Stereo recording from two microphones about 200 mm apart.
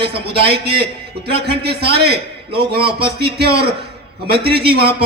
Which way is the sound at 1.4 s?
55° right (ahead or behind).